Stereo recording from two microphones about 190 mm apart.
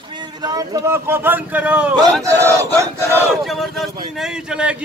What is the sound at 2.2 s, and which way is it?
Battle cry, 15° right (ahead or behind).